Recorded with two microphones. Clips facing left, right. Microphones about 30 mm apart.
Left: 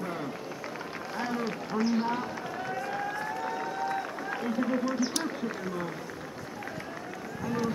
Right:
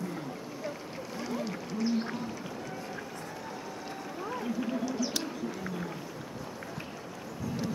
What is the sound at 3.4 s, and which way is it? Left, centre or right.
Run, left.